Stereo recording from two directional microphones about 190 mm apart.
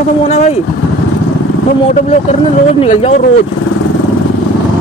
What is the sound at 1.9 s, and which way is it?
Speech, 35° left (ahead or behind).